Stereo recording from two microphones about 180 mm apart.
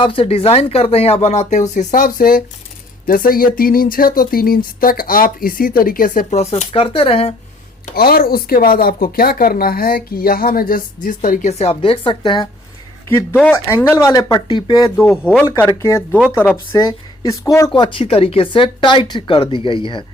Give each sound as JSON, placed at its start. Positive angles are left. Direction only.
{"t": 0.0, "sound": "speech", "side_deg": 30}
{"t": 7.9, "sound": "speech", "side_deg": 55}
{"t": 13.1, "sound": "speech", "side_deg": 10}